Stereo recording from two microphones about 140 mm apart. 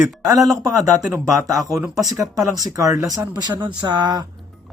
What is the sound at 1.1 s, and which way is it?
Speech, 15° right (ahead or behind).